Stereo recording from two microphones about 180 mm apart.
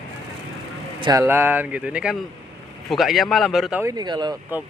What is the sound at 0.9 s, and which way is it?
Speech, 25° right (ahead or behind).